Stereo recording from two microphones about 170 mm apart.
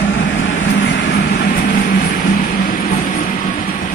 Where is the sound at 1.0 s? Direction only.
90° left.